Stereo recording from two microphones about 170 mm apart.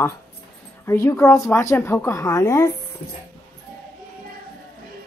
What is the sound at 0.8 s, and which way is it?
A woman's voice, 15° left (ahead or behind).